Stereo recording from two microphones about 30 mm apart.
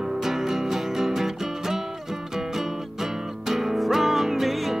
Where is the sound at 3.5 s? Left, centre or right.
Centre.